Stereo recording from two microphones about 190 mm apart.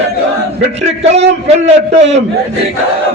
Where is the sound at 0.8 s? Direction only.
35° right (ahead or behind).